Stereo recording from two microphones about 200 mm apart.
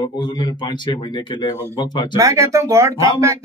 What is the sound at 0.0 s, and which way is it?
Speech, 20° left (ahead or behind).